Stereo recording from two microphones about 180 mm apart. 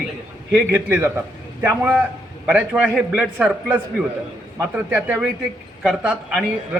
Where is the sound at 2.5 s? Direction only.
10° right (ahead or behind).